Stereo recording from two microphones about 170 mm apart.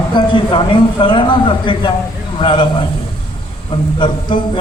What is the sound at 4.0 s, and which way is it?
Speech, 30° left (ahead or behind).